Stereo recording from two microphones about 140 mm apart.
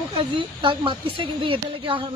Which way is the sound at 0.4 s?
35° right (ahead or behind).